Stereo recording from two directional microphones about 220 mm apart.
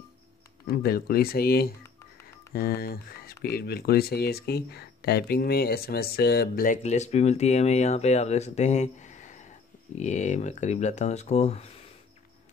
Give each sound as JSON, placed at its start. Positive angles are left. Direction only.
{"t": 0.7, "sound": "speech", "side_deg": 45}